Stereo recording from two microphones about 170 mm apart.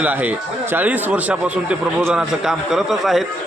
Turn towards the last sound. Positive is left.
turn(degrees=0)  # may be behind; listen again after turning